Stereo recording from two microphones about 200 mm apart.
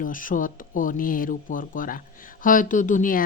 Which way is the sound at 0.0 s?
40° left (ahead or behind).